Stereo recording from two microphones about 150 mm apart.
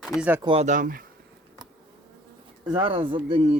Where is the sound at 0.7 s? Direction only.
60° right (ahead or behind).